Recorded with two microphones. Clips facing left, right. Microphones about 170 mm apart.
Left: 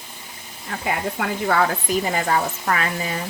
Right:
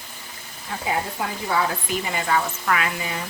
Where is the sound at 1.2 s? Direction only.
60° left (ahead or behind).